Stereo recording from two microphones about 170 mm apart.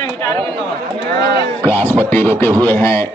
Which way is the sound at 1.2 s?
75° right (ahead or behind).